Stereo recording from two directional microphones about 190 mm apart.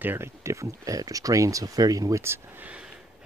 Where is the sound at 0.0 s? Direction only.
10° right (ahead or behind).